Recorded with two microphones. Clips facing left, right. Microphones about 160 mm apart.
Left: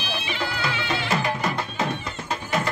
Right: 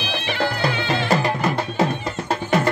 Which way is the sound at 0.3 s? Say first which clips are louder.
Right 7 dB; 50° right (ahead or behind).